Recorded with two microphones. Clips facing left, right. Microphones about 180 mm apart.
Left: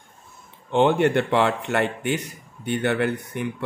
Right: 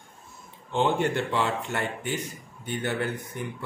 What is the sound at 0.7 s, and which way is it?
Speech, 65° left (ahead or behind).